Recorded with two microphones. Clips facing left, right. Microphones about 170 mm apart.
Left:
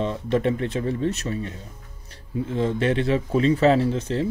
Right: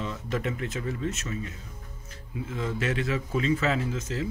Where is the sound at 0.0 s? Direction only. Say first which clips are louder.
Left 8 dB; 30° left (ahead or behind).